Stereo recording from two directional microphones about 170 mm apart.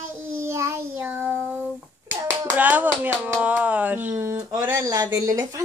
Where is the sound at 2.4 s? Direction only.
10° right (ahead or behind).